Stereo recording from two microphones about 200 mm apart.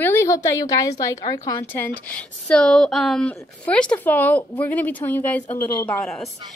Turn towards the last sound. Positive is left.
turn(degrees=0)  # may be behind; listen again after turning